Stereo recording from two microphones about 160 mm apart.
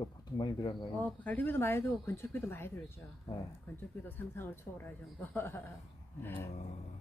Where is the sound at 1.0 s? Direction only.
10° left (ahead or behind).